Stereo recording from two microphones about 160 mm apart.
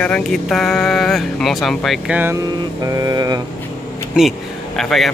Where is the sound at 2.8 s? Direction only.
20° right (ahead or behind).